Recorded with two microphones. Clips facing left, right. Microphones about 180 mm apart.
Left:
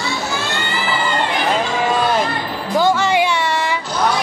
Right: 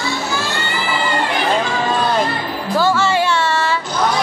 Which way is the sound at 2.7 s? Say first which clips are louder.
Left 1 dB; 15° left (ahead or behind).